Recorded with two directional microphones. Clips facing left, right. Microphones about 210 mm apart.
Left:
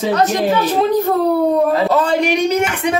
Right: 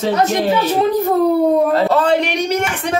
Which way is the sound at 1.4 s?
Centre (ahead or behind).